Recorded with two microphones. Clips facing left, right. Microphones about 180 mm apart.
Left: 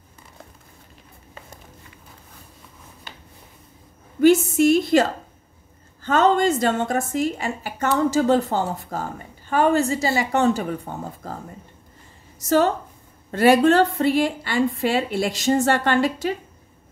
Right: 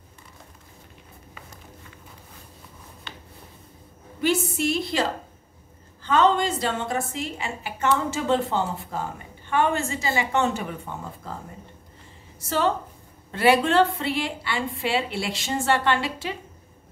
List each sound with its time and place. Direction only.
4.2 s a woman's voice: 45° left (ahead or behind)
6.0 s a woman's voice: 45° left (ahead or behind)
12.4 s a woman's voice: 45° left (ahead or behind)